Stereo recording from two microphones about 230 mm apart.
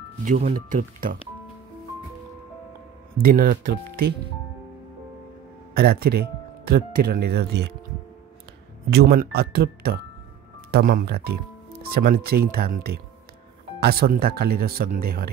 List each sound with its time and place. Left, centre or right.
0.2 s speech: right
3.2 s speech: right
5.8 s speech: right
8.9 s speech: right